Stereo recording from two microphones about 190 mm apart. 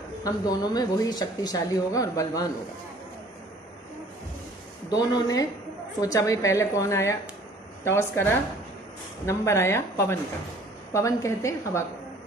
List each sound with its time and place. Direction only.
0.2 s speech: 20° left (ahead or behind)
4.8 s a woman's voice: 20° left (ahead or behind)